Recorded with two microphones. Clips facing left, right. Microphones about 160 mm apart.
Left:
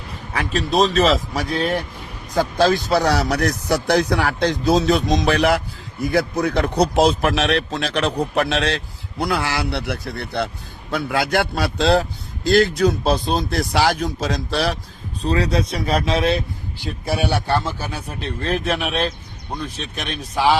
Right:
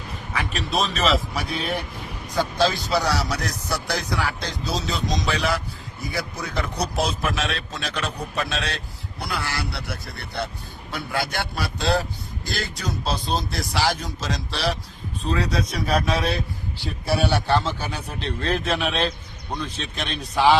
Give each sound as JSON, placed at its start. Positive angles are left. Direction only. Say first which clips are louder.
{"t": 0.3, "sound": "a man's voice", "louder": "left 7 dB", "side_deg": 40}
{"t": 9.1, "sound": "a man's voice", "louder": "left 8 dB", "side_deg": 90}
{"t": 9.7, "sound": "speech", "louder": "left 8 dB", "side_deg": 80}
{"t": 10.9, "sound": "a man's voice", "louder": "left 7 dB", "side_deg": 90}
{"t": 15.2, "sound": "speech", "louder": "left 5 dB", "side_deg": 35}
{"t": 16.8, "sound": "a man's voice", "louder": "left 1 dB", "side_deg": 15}